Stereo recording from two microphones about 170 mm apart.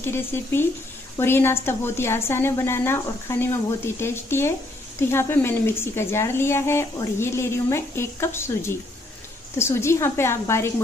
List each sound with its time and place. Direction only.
0.0 s a woman's voice: 15° left (ahead or behind)